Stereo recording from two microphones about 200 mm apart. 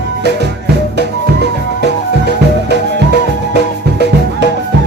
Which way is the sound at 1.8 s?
55° right (ahead or behind).